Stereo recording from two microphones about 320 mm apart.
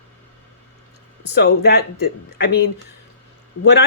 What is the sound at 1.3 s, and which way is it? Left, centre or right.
Speech, left.